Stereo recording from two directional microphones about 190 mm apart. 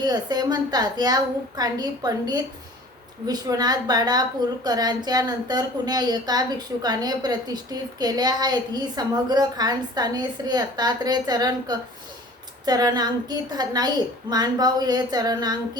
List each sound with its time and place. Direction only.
0.0 s a woman's voice: 20° right (ahead or behind)